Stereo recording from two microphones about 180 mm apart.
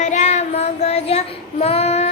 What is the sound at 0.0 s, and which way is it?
Child singing, 40° left (ahead or behind).